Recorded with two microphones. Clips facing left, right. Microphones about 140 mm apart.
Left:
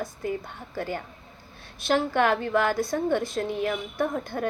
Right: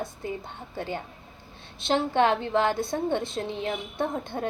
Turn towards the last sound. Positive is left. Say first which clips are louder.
# left 2 dB
turn(degrees=-25)  # may be behind; listen again after turning